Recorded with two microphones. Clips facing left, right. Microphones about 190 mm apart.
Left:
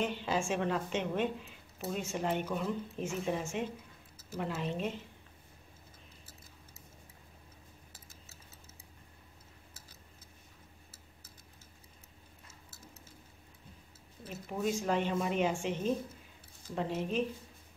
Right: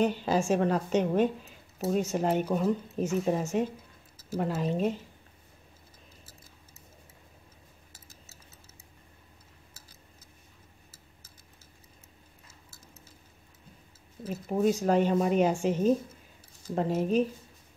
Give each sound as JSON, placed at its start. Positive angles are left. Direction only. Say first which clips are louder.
{"t": 0.0, "sound": "a woman's voice", "louder": "right 7 dB", "side_deg": -40}
{"t": 14.2, "sound": "a woman's voice", "louder": "right 8 dB", "side_deg": -40}